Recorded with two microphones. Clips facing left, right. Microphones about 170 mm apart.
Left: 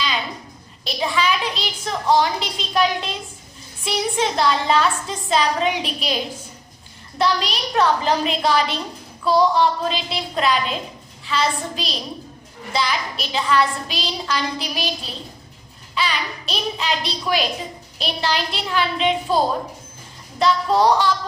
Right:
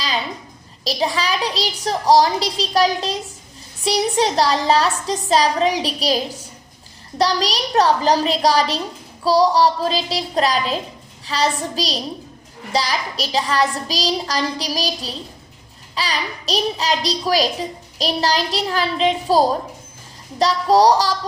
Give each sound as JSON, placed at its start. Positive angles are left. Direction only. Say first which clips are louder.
{"t": 0.9, "sound": "a child's voice", "louder": "right 1 dB", "side_deg": -40}